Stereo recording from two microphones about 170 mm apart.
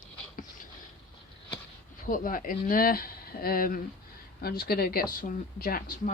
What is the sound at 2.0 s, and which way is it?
Speech, 55° left (ahead or behind).